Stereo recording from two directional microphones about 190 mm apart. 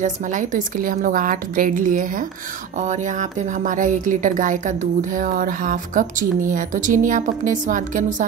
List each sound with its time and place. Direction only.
0.0 s speech: 40° right (ahead or behind)